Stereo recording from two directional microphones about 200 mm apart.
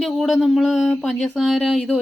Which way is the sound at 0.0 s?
Centre (ahead or behind).